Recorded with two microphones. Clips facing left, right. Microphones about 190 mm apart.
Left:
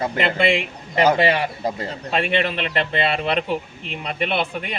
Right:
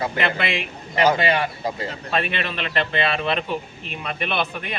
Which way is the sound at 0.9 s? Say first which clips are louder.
Left 2 dB; 30° left (ahead or behind).